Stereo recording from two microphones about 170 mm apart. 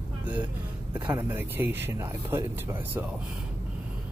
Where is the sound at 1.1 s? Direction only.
10° right (ahead or behind).